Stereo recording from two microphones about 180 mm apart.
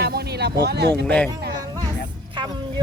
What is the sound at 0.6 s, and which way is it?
Speech, 65° right (ahead or behind).